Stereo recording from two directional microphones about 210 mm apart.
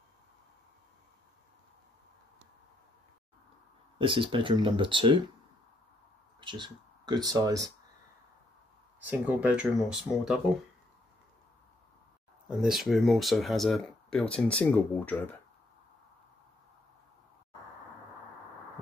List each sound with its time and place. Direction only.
4.0 s speech: 25° right (ahead or behind)
6.4 s speech: 20° right (ahead or behind)
9.0 s speech: 10° right (ahead or behind)
12.4 s speech: centre (ahead or behind)